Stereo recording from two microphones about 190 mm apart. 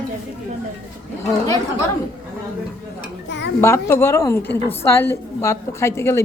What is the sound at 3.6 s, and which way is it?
A woman's voice, 15° left (ahead or behind).